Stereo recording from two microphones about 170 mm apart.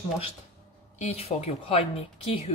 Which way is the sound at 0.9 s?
35° left (ahead or behind).